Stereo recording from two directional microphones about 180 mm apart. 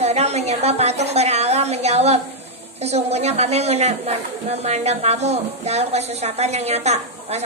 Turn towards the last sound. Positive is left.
turn(degrees=-35)  # may be behind; listen again after turning